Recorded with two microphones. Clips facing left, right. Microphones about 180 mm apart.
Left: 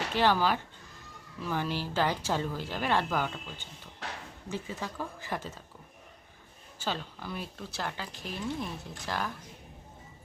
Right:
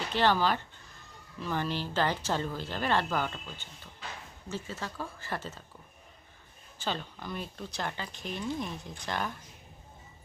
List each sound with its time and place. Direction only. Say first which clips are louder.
0.1 s speech: even; 10° left (ahead or behind)
4.0 s a sound: left 3 dB; 80° left
4.4 s speech: left 1 dB; 15° left (ahead or behind)
6.7 s speech: even; 5° left (ahead or behind)